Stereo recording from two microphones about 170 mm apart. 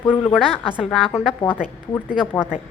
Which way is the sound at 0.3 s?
Centre (ahead or behind).